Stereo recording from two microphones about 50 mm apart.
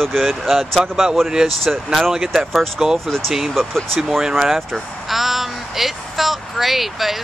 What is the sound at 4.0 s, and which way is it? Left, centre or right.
Speech, centre.